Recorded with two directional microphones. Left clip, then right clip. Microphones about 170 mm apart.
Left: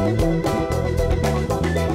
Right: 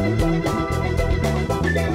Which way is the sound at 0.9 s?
Centre (ahead or behind).